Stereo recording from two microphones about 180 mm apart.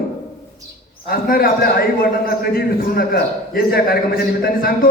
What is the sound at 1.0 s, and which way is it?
A man's voice, 55° left (ahead or behind).